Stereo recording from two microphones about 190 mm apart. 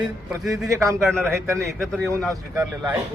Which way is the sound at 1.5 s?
Centre (ahead or behind).